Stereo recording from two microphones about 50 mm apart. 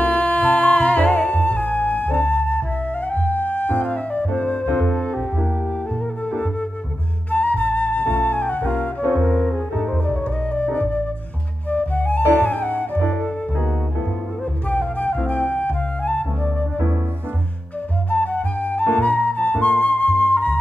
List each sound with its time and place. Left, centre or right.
0.0 s music: left
7.2 s flute: left
9.2 s cello: left
10.0 s music: left
11.7 s flute: left
12.4 s music: left
14.7 s flute: left
18.1 s flute: left